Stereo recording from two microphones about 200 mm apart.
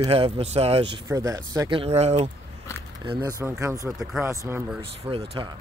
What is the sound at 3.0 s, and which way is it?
Speech, 20° right (ahead or behind).